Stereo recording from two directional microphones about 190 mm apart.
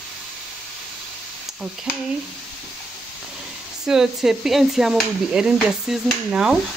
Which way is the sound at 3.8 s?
5° right (ahead or behind).